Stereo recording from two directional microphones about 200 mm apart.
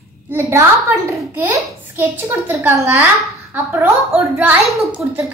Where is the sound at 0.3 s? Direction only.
15° right (ahead or behind).